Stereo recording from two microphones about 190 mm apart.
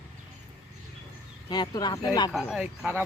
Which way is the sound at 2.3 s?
Centre (ahead or behind).